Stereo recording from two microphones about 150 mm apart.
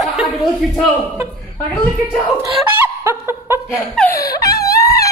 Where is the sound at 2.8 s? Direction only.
15° right (ahead or behind).